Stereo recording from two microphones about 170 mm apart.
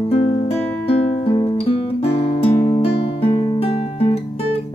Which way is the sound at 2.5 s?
15° left (ahead or behind).